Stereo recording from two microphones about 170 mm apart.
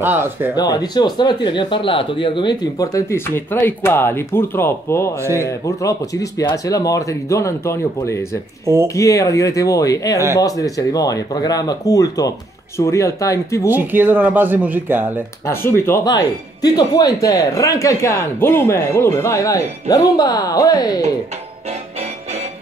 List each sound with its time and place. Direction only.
0.0 s speech: 10° right (ahead or behind)
0.6 s speech: 20° left (ahead or behind)
13.7 s speech: 10° right (ahead or behind)
15.4 s speech: 15° left (ahead or behind)
21.6 s music: 40° right (ahead or behind)